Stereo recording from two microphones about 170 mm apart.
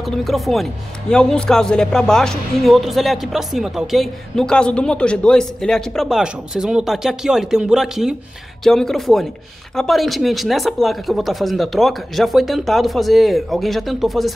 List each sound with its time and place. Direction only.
0.0 s a man's voice: centre (ahead or behind)